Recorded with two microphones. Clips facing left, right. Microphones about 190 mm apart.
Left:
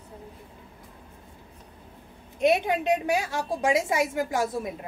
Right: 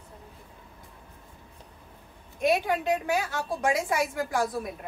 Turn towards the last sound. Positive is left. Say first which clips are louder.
# left 1 dB
turn(degrees=25)  # may be behind; listen again after turning